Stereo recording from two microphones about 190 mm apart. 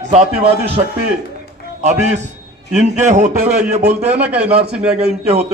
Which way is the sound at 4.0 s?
10° right (ahead or behind).